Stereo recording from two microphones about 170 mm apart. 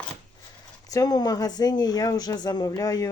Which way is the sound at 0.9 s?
20° left (ahead or behind).